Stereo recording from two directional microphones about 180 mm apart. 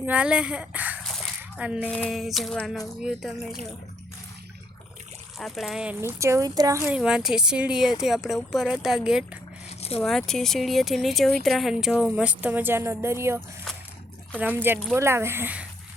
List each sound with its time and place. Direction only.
0.0 s speech: 10° right (ahead or behind)
1.0 s a sound: centre (ahead or behind)
1.9 s speech: centre (ahead or behind)
5.4 s speech: centre (ahead or behind)